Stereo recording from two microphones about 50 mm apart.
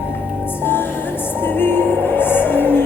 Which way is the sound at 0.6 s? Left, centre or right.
Left.